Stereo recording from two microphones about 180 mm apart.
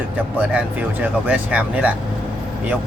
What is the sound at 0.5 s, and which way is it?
Speech, 10° right (ahead or behind).